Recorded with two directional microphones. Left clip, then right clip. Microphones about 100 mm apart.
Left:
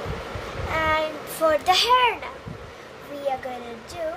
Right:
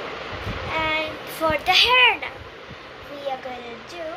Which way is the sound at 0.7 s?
50° left (ahead or behind).